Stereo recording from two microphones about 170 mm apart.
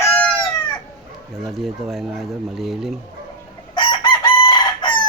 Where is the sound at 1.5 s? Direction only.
Centre (ahead or behind).